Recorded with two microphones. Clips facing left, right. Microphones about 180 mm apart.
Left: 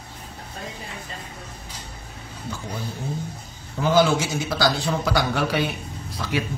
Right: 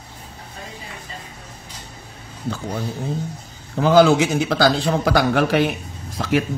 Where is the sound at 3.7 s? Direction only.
65° right (ahead or behind).